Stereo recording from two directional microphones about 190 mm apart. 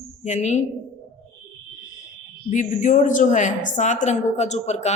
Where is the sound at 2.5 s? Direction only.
40° left (ahead or behind).